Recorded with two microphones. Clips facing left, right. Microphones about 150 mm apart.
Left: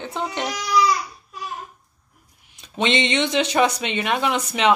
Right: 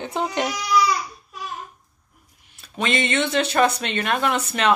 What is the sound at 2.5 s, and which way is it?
Speech, 20° left (ahead or behind).